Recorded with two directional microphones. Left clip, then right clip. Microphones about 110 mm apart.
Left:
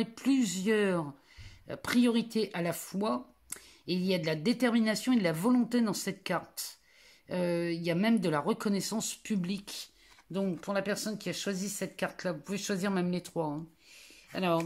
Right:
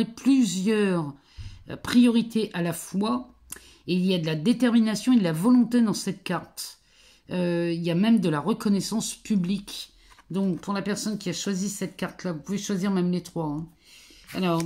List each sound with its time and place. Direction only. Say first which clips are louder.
0.0 s speech: right 7 dB; 25° left (ahead or behind)